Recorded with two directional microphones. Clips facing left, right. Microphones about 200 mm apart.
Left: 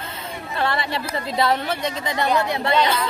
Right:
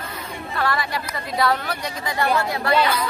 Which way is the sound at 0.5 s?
25° left (ahead or behind).